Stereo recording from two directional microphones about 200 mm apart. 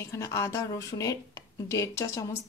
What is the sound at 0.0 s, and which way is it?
A woman's voice, 15° left (ahead or behind).